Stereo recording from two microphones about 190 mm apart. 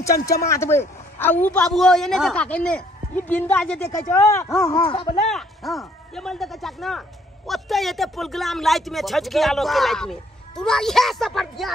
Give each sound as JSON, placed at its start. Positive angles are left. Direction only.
{"t": 0.2, "sound": "a man's voice", "side_deg": 15}
{"t": 4.6, "sound": "speech", "side_deg": 25}
{"t": 5.2, "sound": "speech", "side_deg": 0}